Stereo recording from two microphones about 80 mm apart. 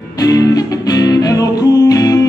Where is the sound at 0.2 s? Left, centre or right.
Left.